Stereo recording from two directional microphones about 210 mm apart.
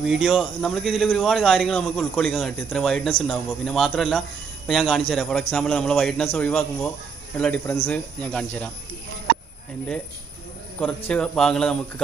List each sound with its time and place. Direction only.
0.0 s a man's voice: 5° right (ahead or behind)
11.1 s a man's voice: 5° left (ahead or behind)